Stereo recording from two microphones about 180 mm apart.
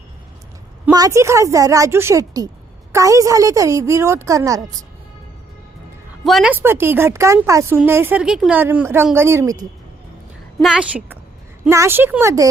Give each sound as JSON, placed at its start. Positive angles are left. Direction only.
{"t": 0.9, "sound": "a woman's voice", "side_deg": -20}
{"t": 6.2, "sound": "a woman's voice", "side_deg": -5}
{"t": 10.6, "sound": "a woman's voice", "side_deg": -5}